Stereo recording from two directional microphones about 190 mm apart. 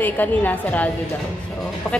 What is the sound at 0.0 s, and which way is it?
Speech, 10° left (ahead or behind).